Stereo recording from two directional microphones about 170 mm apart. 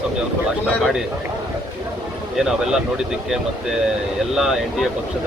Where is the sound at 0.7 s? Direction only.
Centre (ahead or behind).